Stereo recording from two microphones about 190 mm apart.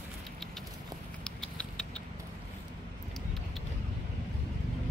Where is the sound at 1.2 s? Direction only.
5° left (ahead or behind).